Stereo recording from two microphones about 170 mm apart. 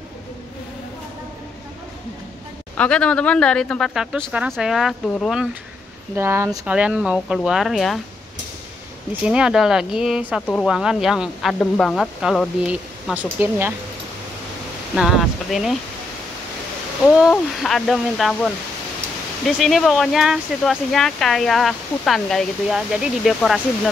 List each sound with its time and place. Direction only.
2.8 s speech: 5° left (ahead or behind)
6.1 s speech: 15° right (ahead or behind)
9.2 s speech: 5° right (ahead or behind)
15.0 s speech: centre (ahead or behind)
17.2 s speech: centre (ahead or behind)